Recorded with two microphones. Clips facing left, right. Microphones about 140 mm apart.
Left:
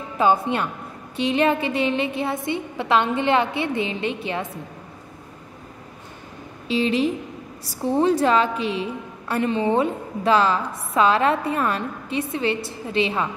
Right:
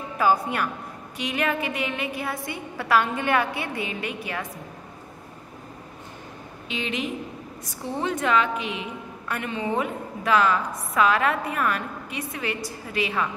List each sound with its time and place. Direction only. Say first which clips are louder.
0.2 s a woman's voice: left 3 dB; 25° left (ahead or behind)
6.7 s a woman's voice: left 9 dB; 35° left (ahead or behind)